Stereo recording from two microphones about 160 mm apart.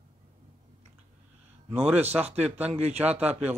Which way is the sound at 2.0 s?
40° right (ahead or behind).